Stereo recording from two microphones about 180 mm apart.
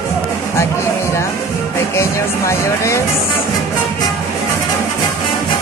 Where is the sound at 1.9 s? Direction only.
15° left (ahead or behind).